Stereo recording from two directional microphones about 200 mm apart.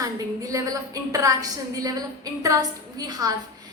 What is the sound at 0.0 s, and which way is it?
A woman's voice, 15° right (ahead or behind).